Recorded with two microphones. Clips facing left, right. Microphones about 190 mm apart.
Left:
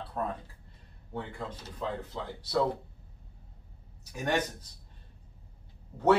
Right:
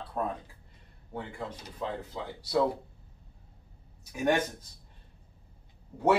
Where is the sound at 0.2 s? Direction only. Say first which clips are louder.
Right 2 dB; 15° right (ahead or behind).